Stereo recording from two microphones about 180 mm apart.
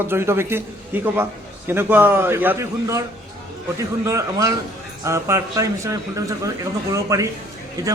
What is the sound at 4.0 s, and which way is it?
A man's voice, 15° right (ahead or behind).